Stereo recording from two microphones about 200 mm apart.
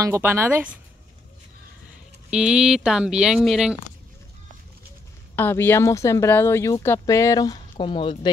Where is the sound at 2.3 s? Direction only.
5° right (ahead or behind).